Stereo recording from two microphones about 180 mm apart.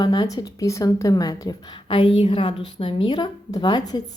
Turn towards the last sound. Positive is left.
turn(degrees=20)  # may be behind; listen again after turning